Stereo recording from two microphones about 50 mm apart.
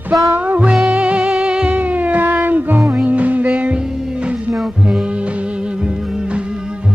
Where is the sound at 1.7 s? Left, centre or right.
Right.